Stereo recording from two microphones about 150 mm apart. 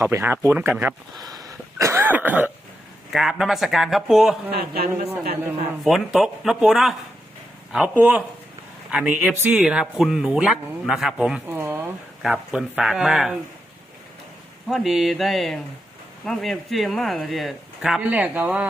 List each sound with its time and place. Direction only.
0.0 s speech: 15° right (ahead or behind)
1.1 s a sound: 25° right (ahead or behind)
3.1 s a man's voice: centre (ahead or behind)
4.5 s a man's voice: 90° right
5.8 s a man's voice: centre (ahead or behind)
7.9 s a man's voice: 10° right (ahead or behind)
11.4 s speech: 15° right (ahead or behind)
12.2 s a man's voice: 5° right (ahead or behind)
14.7 s a man's voice: centre (ahead or behind)